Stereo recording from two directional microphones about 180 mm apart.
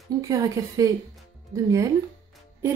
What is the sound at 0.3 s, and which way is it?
A woman's voice, 20° right (ahead or behind).